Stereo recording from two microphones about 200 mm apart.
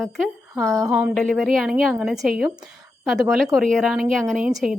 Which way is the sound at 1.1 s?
5° left (ahead or behind).